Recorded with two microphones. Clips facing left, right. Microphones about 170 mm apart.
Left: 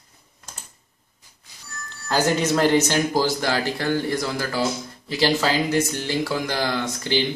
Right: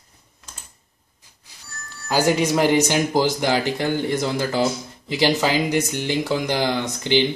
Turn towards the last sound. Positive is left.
turn(degrees=-20)  # may be behind; listen again after turning